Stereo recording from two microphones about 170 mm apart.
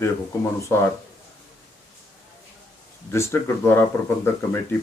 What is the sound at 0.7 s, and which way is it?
Speech, 15° left (ahead or behind).